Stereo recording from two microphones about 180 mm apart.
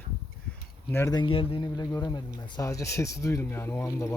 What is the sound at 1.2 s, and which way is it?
Speech, 30° left (ahead or behind).